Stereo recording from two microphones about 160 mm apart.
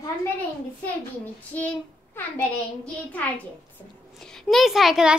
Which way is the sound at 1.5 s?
10° left (ahead or behind).